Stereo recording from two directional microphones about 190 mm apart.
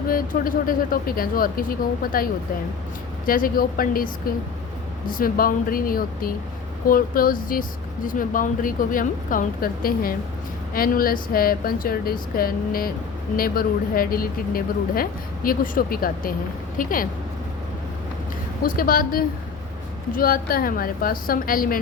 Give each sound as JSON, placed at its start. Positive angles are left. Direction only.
{"t": 0.1, "sound": "speech", "side_deg": 50}
{"t": 3.2, "sound": "speech", "side_deg": 50}
{"t": 18.6, "sound": "speech", "side_deg": 50}